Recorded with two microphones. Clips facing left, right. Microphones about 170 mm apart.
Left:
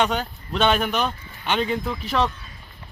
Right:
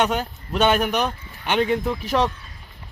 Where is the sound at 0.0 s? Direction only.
10° right (ahead or behind).